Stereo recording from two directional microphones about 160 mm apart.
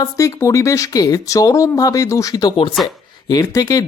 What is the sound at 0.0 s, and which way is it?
Speech, 20° left (ahead or behind).